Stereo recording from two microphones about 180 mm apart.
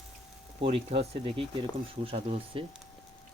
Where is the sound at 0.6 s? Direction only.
35° right (ahead or behind).